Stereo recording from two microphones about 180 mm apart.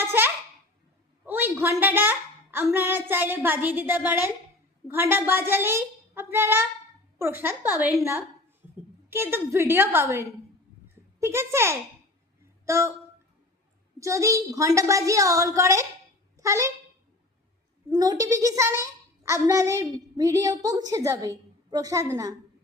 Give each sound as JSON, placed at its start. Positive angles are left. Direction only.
{"t": 0.0, "sound": "babbling", "side_deg": -10}
{"t": 1.2, "sound": "a sound", "side_deg": -10}
{"t": 1.8, "sound": "a child's voice", "side_deg": -10}
{"t": 14.0, "sound": "a child's voice", "side_deg": -15}
{"t": 17.9, "sound": "a child's voice", "side_deg": -20}